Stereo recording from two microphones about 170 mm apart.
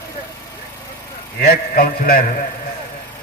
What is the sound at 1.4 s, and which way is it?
Speech, 60° left (ahead or behind).